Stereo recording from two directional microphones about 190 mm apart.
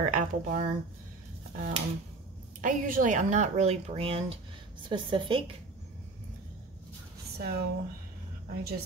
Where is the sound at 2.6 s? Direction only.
45° right (ahead or behind); by 5.5 s 25° right (ahead or behind).